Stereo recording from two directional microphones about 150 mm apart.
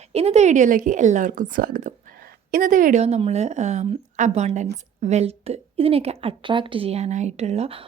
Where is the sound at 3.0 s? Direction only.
45° right (ahead or behind).